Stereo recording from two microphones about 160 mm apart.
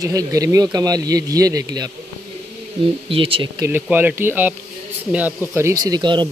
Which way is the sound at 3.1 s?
35° right (ahead or behind).